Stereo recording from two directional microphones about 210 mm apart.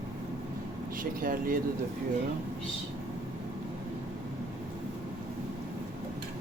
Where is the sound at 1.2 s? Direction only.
40° right (ahead or behind).